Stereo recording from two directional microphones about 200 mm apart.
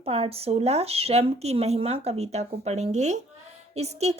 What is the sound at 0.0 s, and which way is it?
Speech, 30° right (ahead or behind).